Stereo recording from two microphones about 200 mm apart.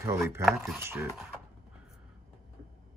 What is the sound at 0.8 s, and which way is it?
Speech, 15° right (ahead or behind).